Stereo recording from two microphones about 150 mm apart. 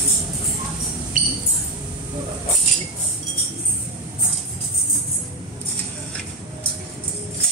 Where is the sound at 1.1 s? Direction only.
60° right (ahead or behind).